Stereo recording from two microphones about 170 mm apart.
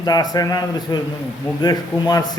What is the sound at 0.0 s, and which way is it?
A man's voice, 25° left (ahead or behind).